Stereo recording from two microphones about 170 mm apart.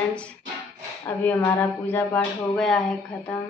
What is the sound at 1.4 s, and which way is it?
A woman's voice, 10° left (ahead or behind).